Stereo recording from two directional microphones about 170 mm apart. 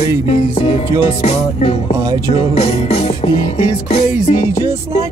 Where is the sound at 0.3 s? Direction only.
35° left (ahead or behind).